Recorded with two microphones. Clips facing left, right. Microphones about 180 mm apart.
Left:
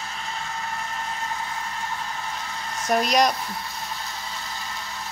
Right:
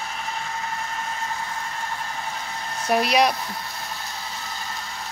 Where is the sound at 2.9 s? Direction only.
5° right (ahead or behind).